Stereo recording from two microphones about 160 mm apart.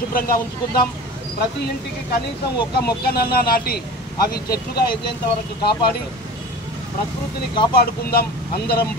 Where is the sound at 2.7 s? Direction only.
80° left.